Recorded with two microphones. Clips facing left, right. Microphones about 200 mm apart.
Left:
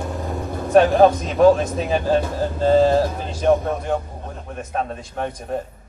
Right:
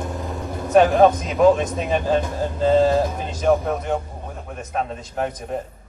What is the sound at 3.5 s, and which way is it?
Speech, centre (ahead or behind).